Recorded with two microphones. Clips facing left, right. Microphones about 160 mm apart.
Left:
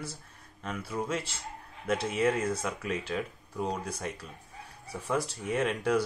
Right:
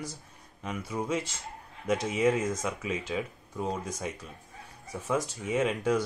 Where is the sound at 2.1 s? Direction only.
10° right (ahead or behind).